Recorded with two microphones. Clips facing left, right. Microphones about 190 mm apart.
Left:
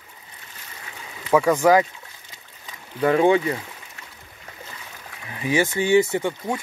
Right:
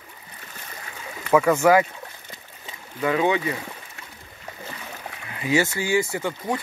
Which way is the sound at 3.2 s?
30° left (ahead or behind).